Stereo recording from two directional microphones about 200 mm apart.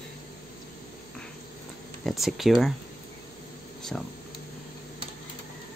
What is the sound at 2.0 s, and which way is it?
Speech, centre (ahead or behind).